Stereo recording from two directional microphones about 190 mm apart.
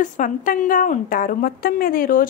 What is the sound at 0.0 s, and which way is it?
A woman's voice, 45° left (ahead or behind).